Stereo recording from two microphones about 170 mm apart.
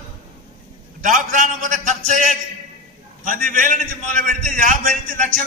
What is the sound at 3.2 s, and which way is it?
A man's voice, 50° right (ahead or behind).